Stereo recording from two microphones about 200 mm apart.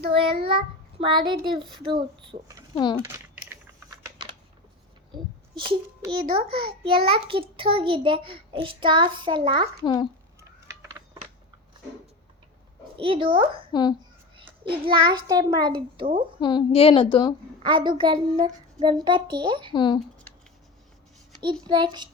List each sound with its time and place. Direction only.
0.1 s a child's voice: 25° right (ahead or behind)
2.7 s a woman's voice: 20° left (ahead or behind)
3.0 s typing: 10° right (ahead or behind)
5.1 s a child's voice: 25° right (ahead or behind)
9.8 s a woman's voice: 25° left (ahead or behind)
13.0 s a child's voice: 25° right (ahead or behind)
16.4 s a woman's voice: 20° left (ahead or behind)
17.6 s a child's voice: 25° right (ahead or behind)
19.7 s a woman's voice: 25° left (ahead or behind)
21.6 s a child's voice: 20° right (ahead or behind)